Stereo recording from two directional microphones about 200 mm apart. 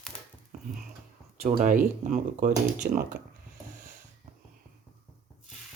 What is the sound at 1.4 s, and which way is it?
Speech, 40° right (ahead or behind).